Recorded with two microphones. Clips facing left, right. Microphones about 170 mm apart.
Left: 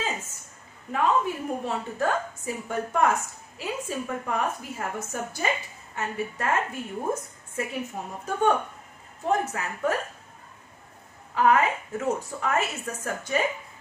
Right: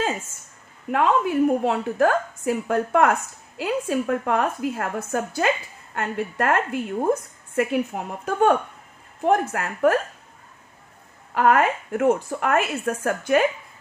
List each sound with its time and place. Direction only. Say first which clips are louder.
0.9 s a woman's voice: right 5 dB; 80° right
9.2 s a woman's voice: right 5 dB; 65° right (ahead or behind)
11.3 s a woman's voice: right 3 dB; 65° right (ahead or behind)